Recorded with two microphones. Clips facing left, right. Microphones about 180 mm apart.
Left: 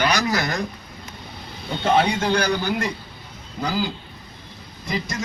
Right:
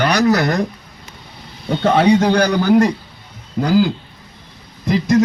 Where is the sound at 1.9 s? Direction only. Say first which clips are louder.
Right 7 dB; 40° right (ahead or behind).